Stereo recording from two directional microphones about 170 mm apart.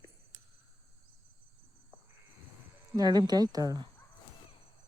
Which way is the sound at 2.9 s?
25° right (ahead or behind).